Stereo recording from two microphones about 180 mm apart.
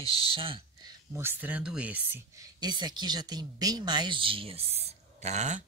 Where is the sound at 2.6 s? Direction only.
25° right (ahead or behind).